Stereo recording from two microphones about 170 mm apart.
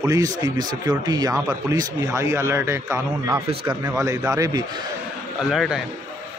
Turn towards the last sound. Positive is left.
turn(degrees=0)  # may be behind; listen again after turning